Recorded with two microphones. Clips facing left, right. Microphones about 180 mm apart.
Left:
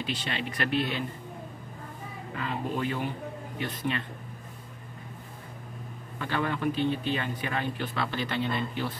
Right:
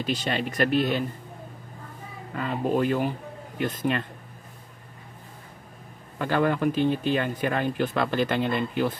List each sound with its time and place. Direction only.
0.0 s speech: 40° right (ahead or behind)
2.3 s speech: 45° right (ahead or behind)
6.1 s speech: 45° right (ahead or behind)